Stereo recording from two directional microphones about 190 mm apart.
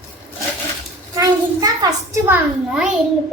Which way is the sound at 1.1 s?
20° right (ahead or behind).